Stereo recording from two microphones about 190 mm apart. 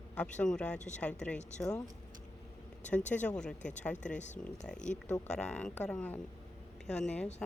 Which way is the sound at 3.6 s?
40° left (ahead or behind).